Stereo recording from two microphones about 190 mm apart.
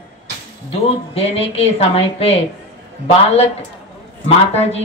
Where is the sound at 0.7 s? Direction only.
30° left (ahead or behind).